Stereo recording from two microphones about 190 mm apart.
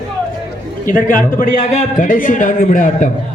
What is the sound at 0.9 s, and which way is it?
A man's voice, 45° left (ahead or behind).